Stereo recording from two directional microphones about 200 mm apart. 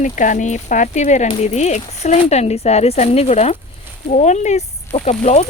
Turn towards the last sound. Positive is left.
turn(degrees=35)  # may be behind; listen again after turning